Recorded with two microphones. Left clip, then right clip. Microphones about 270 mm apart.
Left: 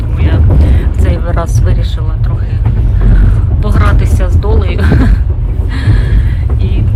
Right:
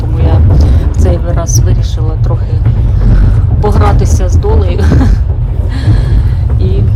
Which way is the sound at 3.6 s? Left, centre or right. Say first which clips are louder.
Right 5 dB; centre.